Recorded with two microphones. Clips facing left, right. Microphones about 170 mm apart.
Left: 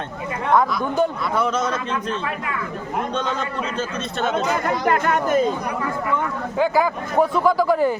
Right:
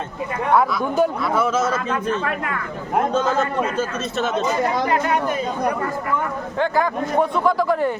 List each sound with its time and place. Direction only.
0.5 s a man's voice: 5° right (ahead or behind)
1.9 s speech: 50° right (ahead or behind)
3.8 s a man's voice: centre (ahead or behind)
4.4 s speech: 55° left (ahead or behind)
6.6 s a man's voice: 5° left (ahead or behind)